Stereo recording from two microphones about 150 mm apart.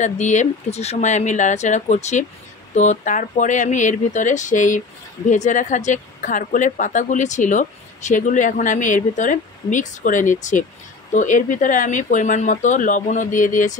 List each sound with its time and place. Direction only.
0.0 s speech: 55° left (ahead or behind)